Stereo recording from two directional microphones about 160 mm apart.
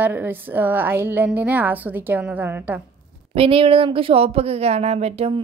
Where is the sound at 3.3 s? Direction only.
35° right (ahead or behind).